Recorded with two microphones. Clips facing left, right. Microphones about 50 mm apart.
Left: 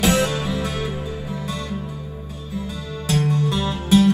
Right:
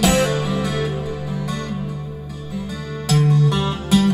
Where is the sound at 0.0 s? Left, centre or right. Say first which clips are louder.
Right 2 dB; right.